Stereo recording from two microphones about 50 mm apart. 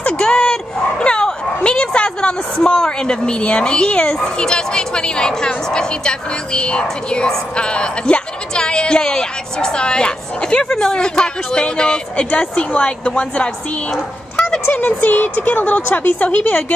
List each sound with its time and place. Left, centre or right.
0.1 s speech: centre
15.0 s speech: left